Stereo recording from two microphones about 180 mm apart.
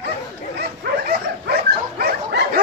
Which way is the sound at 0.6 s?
60° right (ahead or behind).